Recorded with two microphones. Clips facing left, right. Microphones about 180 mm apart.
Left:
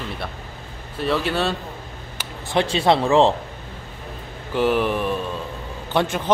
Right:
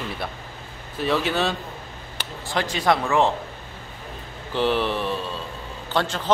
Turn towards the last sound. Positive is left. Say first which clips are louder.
# left 3 dB
turn(degrees=20)  # may be behind; listen again after turning